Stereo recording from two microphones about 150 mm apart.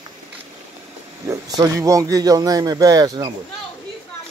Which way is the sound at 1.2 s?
20° right (ahead or behind).